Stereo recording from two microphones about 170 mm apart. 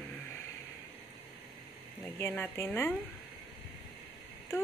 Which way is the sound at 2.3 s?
10° left (ahead or behind).